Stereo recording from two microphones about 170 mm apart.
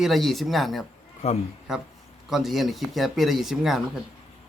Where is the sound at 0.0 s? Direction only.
Centre (ahead or behind).